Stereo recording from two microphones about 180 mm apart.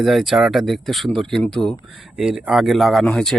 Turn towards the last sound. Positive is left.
turn(degrees=5)  # may be behind; listen again after turning